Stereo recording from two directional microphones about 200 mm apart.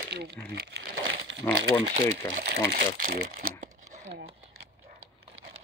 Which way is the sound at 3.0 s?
45° right (ahead or behind).